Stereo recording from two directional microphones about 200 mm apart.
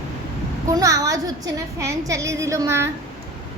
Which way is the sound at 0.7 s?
15° right (ahead or behind).